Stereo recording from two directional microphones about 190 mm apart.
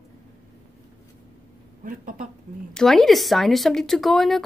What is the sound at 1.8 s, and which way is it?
Speech, 45° right (ahead or behind).